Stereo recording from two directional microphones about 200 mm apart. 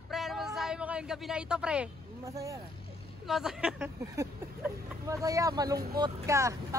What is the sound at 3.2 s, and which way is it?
Speech, centre (ahead or behind).